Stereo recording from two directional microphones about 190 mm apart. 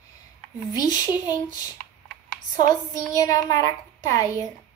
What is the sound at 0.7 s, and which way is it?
Child singing, 20° left (ahead or behind).